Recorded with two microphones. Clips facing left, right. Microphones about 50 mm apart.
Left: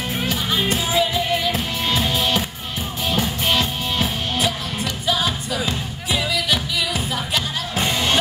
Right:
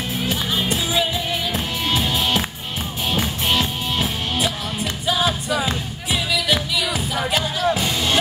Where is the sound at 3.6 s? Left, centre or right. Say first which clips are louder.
Even; right.